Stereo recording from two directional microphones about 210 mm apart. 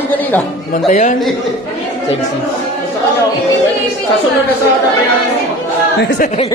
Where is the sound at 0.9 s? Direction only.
40° left (ahead or behind).